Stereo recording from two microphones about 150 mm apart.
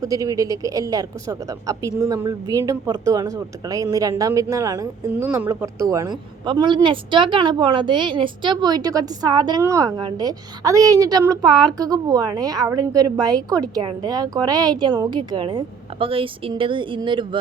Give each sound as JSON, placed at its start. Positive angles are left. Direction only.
{"t": 0.0, "sound": "a woman's voice", "side_deg": -25}